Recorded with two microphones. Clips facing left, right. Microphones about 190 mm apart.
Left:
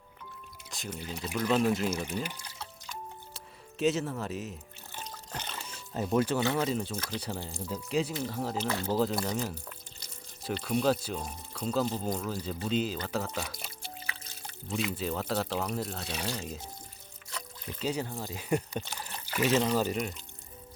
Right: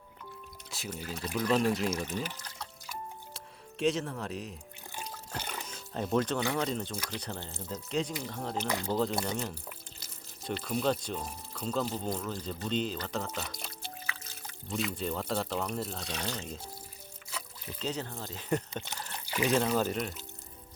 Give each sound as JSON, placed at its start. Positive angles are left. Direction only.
{"t": 0.7, "sound": "speech", "side_deg": -5}
{"t": 1.1, "sound": "speech", "side_deg": 5}
{"t": 2.8, "sound": "music", "side_deg": 0}
{"t": 4.9, "sound": "water", "side_deg": -10}
{"t": 5.7, "sound": "speech", "side_deg": 5}
{"t": 8.6, "sound": "speech", "side_deg": -15}
{"t": 8.9, "sound": "speech", "side_deg": 5}
{"t": 17.7, "sound": "speech", "side_deg": 10}
{"t": 19.1, "sound": "water", "side_deg": -15}
{"t": 19.6, "sound": "speech", "side_deg": 0}